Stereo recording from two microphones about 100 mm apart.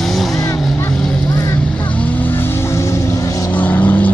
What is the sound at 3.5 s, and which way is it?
Vehicle, 15° left (ahead or behind).